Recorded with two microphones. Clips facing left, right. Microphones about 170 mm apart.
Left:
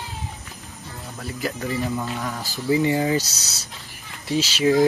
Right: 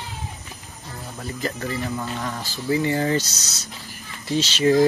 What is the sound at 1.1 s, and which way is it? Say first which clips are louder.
Speech: even; centre (ahead or behind).